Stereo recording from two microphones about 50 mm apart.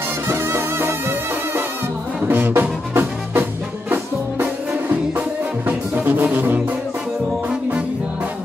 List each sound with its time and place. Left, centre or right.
0.3 s music: right
2.2 s music: right